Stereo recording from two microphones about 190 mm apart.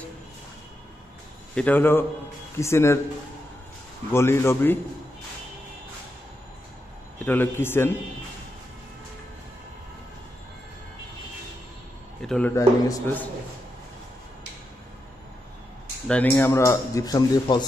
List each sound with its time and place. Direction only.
1.5 s speech: 10° left (ahead or behind)
4.1 s speech: 15° left (ahead or behind)
7.2 s speech: 10° left (ahead or behind)
12.2 s a man's voice: 5° left (ahead or behind)
16.1 s speech: 10° left (ahead or behind)